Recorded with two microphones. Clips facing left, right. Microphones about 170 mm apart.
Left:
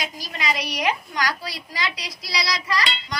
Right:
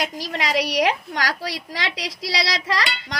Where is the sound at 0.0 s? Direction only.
75° right (ahead or behind).